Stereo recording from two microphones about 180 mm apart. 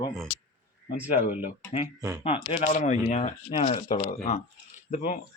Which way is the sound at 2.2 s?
35° left (ahead or behind).